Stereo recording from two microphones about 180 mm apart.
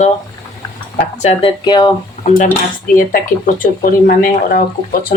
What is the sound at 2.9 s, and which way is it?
Speech, 50° left (ahead or behind).